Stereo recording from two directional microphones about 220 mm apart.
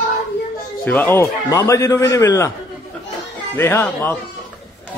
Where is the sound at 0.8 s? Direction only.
10° left (ahead or behind).